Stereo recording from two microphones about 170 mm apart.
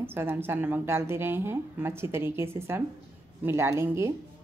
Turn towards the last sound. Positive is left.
turn(degrees=-15)  # may be behind; listen again after turning